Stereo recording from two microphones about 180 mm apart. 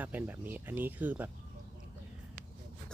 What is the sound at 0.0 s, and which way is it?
Speech, 10° right (ahead or behind).